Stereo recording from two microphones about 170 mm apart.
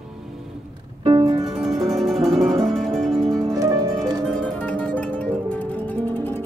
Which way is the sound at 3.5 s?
20° right (ahead or behind).